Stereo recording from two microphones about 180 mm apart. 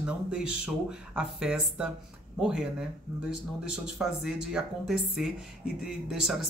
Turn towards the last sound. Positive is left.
turn(degrees=0)  # may be behind; listen again after turning